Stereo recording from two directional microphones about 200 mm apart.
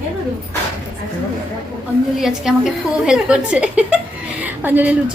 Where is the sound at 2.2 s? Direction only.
5° right (ahead or behind).